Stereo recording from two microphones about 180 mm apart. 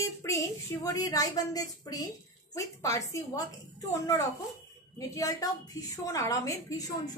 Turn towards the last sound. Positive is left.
turn(degrees=20)  # may be behind; listen again after turning